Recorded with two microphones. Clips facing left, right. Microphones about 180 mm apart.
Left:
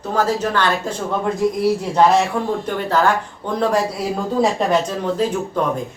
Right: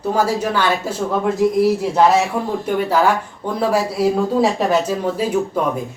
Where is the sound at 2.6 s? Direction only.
10° right (ahead or behind).